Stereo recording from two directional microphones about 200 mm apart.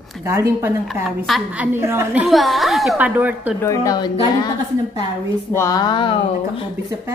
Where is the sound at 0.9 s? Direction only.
Centre (ahead or behind).